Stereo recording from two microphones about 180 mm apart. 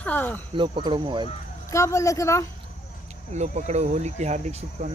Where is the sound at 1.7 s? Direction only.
15° left (ahead or behind).